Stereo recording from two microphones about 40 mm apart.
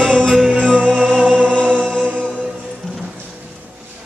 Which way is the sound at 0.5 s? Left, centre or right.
Centre.